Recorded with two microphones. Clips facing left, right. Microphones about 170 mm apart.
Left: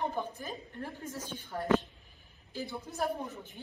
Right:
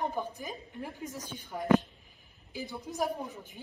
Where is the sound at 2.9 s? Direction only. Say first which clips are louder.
Right 5 dB; 10° right (ahead or behind).